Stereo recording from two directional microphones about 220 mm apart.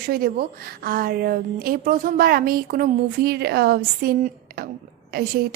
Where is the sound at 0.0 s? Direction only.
45° right (ahead or behind).